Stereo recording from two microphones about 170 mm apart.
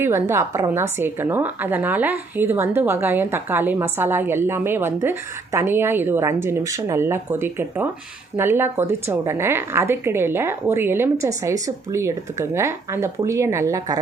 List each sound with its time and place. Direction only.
0.0 s a woman's voice: 15° right (ahead or behind)